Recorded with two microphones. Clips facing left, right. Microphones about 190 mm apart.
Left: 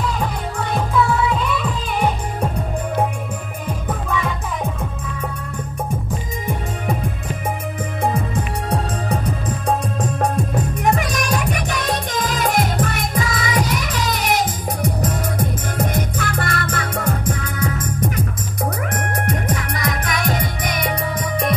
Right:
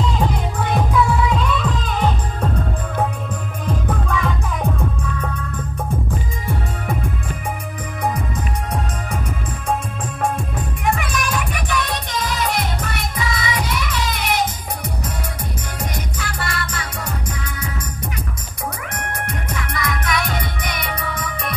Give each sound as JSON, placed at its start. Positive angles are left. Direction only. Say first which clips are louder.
{"t": 1.4, "sound": "music", "louder": "right 1 dB", "side_deg": 10}
{"t": 3.6, "sound": "music", "louder": "right 3 dB", "side_deg": 0}
{"t": 10.2, "sound": "music", "louder": "left 1 dB", "side_deg": 40}
{"t": 19.2, "sound": "music", "louder": "left 5 dB", "side_deg": 40}